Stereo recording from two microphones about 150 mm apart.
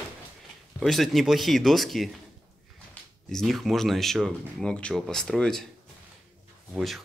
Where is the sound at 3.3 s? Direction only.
Centre (ahead or behind).